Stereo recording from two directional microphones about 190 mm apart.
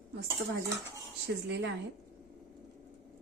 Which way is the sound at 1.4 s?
65° right (ahead or behind).